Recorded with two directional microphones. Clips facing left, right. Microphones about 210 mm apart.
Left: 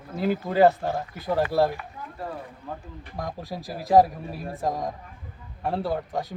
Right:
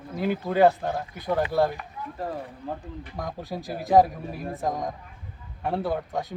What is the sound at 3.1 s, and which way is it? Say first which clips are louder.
Speech: left 1 dB; centre (ahead or behind).